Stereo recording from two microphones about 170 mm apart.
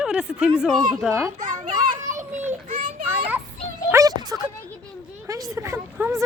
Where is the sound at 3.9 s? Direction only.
20° right (ahead or behind).